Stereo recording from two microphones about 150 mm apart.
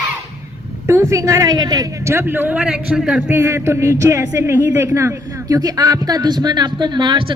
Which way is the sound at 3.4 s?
20° right (ahead or behind).